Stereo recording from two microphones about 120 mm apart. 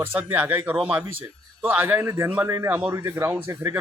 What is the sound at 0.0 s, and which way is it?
A man's voice, 15° right (ahead or behind).